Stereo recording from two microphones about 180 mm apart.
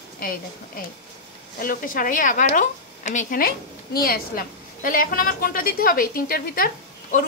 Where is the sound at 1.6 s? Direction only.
50° left (ahead or behind).